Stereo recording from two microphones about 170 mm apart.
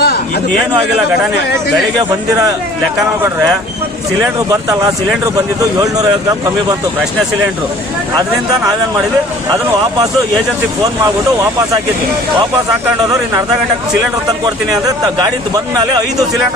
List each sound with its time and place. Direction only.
0.0 s a sound: 70° left (ahead or behind)
5.8 s speech: 20° right (ahead or behind)
15.5 s speech: 20° right (ahead or behind)